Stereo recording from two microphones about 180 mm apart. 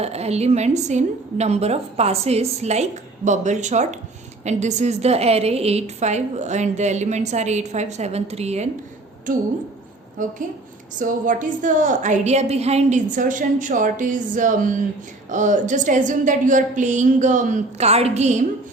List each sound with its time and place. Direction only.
0.0 s a woman's voice: 35° right (ahead or behind)
10.2 s a woman's voice: 45° right (ahead or behind)